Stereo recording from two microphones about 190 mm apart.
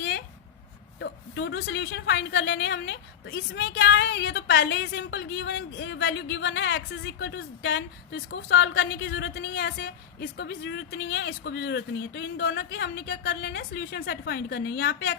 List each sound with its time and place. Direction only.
0.9 s a woman's voice: 65° left (ahead or behind)